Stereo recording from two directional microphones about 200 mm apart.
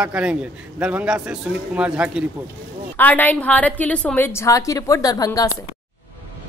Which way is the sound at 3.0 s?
10° left (ahead or behind).